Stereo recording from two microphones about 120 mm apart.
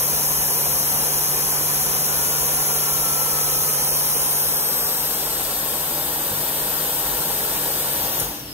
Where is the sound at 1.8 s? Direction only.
60° right (ahead or behind).